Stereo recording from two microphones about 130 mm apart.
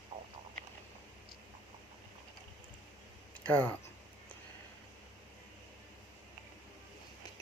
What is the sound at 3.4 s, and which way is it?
Speech, 10° left (ahead or behind).